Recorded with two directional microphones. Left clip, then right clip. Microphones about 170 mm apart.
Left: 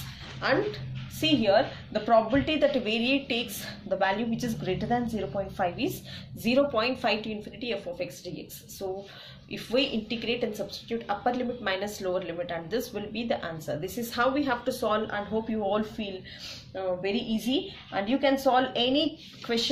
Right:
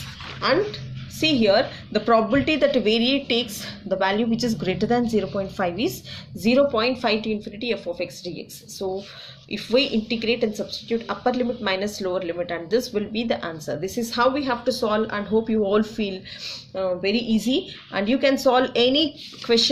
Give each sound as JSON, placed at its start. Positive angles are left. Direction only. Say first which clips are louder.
{"t": 0.4, "sound": "a woman's voice", "louder": "right 5 dB", "side_deg": -30}
{"t": 1.2, "sound": "a woman's voice", "louder": "right 4 dB", "side_deg": -40}
{"t": 15.7, "sound": "a woman's voice", "louder": "right 7 dB", "side_deg": -45}